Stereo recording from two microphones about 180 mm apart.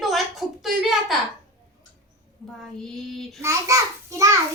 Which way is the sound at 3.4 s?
15° right (ahead or behind).